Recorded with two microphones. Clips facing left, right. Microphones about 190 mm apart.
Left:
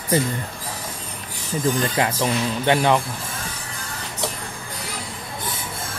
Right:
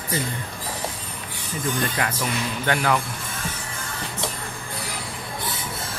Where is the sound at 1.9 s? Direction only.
25° left (ahead or behind).